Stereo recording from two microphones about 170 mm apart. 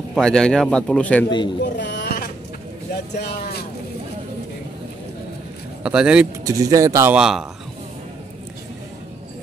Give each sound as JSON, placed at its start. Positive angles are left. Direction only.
{"t": 0.1, "sound": "speech", "side_deg": 5}
{"t": 1.6, "sound": "a sound", "side_deg": 90}
{"t": 2.9, "sound": "vehicle", "side_deg": 65}
{"t": 5.9, "sound": "speech", "side_deg": -5}
{"t": 6.4, "sound": "speech", "side_deg": -20}
{"t": 7.2, "sound": "speech", "side_deg": -5}